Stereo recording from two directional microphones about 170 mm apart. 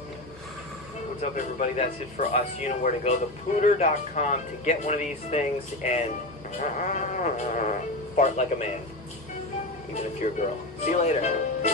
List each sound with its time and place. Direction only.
1.3 s speech: 45° left (ahead or behind)
10.2 s speech: 45° left (ahead or behind)